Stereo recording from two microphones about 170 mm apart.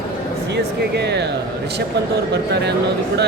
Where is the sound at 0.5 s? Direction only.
80° right.